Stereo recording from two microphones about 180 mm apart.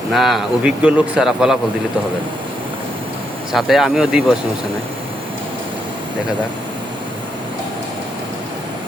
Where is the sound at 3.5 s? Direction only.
Centre (ahead or behind).